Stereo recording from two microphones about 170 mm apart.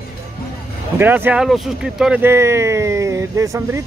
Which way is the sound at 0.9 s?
10° right (ahead or behind).